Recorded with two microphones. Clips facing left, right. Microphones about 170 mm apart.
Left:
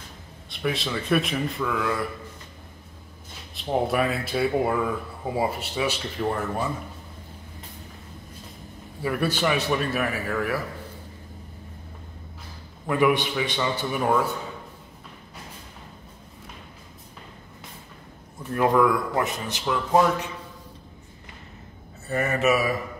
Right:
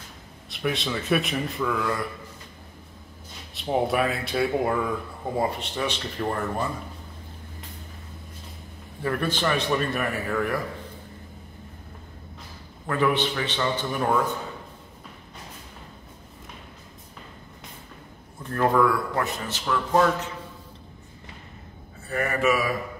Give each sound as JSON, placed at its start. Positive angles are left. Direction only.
{"t": 0.5, "sound": "a man's voice", "side_deg": 0}
{"t": 3.5, "sound": "a man's voice", "side_deg": 0}
{"t": 9.0, "sound": "a man's voice", "side_deg": 10}
{"t": 12.8, "sound": "a man's voice", "side_deg": 10}
{"t": 18.4, "sound": "a man's voice", "side_deg": 10}
{"t": 22.1, "sound": "speech", "side_deg": 20}